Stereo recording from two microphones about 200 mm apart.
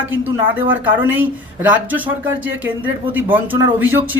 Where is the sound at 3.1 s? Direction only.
10° right (ahead or behind).